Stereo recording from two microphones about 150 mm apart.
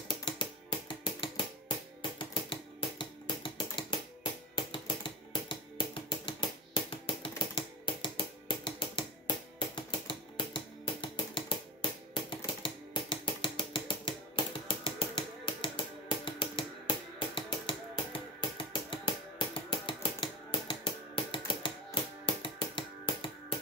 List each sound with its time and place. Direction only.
0.1 s typing: 30° left (ahead or behind)
2.0 s music: 35° left (ahead or behind)
12.6 s a sound: 35° left (ahead or behind)
22.2 s music: 35° left (ahead or behind)